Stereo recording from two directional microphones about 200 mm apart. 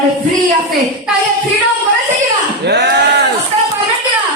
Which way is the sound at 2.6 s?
55° right (ahead or behind).